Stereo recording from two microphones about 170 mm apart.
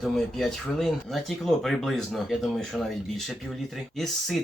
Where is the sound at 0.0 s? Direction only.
Centre (ahead or behind).